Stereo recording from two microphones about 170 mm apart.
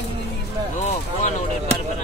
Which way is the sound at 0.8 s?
40° left (ahead or behind).